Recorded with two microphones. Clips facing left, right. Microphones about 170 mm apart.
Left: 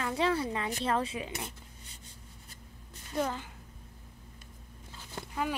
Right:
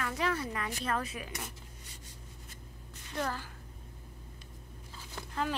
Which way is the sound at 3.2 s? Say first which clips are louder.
Left 3 dB; 20° left (ahead or behind).